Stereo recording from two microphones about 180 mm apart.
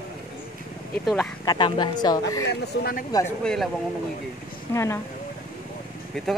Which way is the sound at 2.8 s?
55° left (ahead or behind).